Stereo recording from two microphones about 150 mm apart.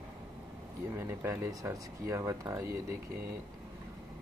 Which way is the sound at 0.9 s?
15° right (ahead or behind).